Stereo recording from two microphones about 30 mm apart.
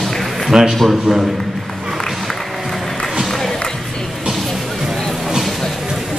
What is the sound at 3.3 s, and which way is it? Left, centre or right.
Music, centre.